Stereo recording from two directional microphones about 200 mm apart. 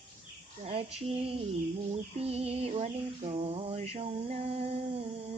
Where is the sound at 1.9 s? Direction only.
30° right (ahead or behind).